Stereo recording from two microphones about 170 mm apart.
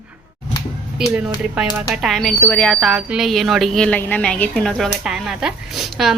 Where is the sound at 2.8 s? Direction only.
5° right (ahead or behind).